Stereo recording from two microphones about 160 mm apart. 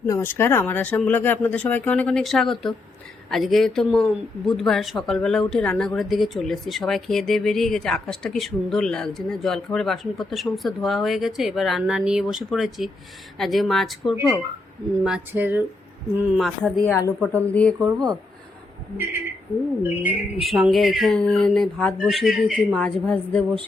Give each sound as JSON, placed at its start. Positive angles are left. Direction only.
{"t": 0.1, "sound": "speech", "side_deg": 15}
{"t": 16.4, "sound": "speech", "side_deg": 0}
{"t": 16.8, "sound": "speech", "side_deg": 20}
{"t": 19.8, "sound": "speech", "side_deg": -10}